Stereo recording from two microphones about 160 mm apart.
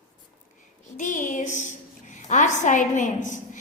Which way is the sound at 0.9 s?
50° left (ahead or behind).